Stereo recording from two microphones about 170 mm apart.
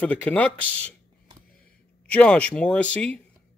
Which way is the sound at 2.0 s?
5° left (ahead or behind).